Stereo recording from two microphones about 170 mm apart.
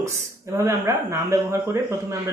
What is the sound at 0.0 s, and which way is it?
Speech, 15° right (ahead or behind).